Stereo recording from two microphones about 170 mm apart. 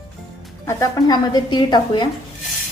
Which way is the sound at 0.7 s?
20° left (ahead or behind).